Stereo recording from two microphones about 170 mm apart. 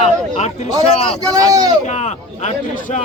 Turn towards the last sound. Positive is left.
turn(degrees=45)  # may be behind; listen again after turning